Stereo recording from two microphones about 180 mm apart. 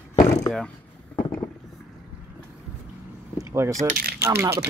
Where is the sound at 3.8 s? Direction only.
55° right (ahead or behind).